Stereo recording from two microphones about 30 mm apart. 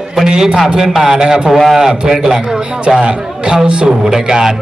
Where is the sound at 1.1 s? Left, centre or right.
Right.